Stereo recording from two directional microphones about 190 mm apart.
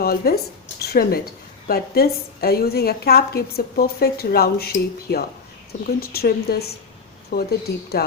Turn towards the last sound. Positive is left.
turn(degrees=60)  # may be behind; listen again after turning